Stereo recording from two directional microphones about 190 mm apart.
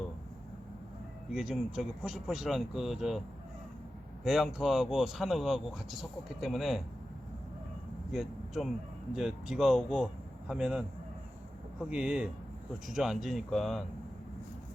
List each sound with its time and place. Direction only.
1.3 s speech: centre (ahead or behind)
4.2 s speech: 5° right (ahead or behind)
8.1 s speech: centre (ahead or behind)
11.9 s speech: 5° right (ahead or behind)